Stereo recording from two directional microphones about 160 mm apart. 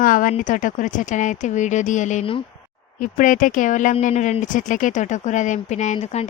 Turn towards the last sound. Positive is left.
turn(degrees=40)  # may be behind; listen again after turning